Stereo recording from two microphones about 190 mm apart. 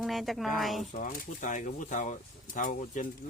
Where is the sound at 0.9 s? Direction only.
40° left (ahead or behind).